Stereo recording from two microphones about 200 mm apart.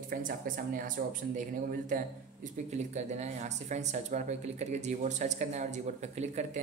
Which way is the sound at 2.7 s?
35° right (ahead or behind).